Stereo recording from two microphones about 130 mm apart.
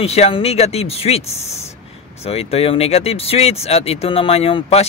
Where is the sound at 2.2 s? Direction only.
50° left (ahead or behind).